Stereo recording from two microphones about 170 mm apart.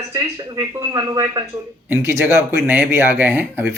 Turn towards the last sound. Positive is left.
turn(degrees=-15)  # may be behind; listen again after turning